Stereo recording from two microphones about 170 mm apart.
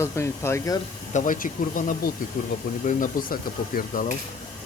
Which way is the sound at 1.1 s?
50° left (ahead or behind).